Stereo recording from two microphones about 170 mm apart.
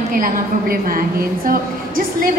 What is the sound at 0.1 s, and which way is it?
A woman's voice, 60° right (ahead or behind).